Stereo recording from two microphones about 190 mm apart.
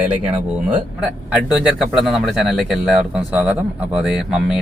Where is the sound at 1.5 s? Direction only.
Centre (ahead or behind).